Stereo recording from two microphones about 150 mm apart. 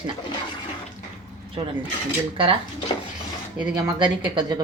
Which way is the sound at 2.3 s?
35° right (ahead or behind).